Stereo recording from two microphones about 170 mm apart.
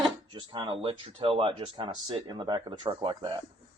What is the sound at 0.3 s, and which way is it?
Speech, 30° right (ahead or behind).